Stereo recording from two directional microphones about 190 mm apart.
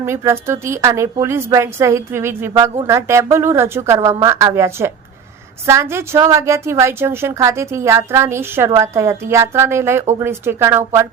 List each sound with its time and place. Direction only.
0.0 s a woman's voice: 15° right (ahead or behind)